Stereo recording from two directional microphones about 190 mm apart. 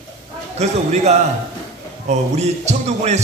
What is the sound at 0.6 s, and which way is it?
A man's voice, 35° right (ahead or behind).